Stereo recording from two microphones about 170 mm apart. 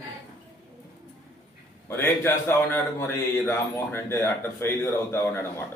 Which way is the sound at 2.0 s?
15° left (ahead or behind).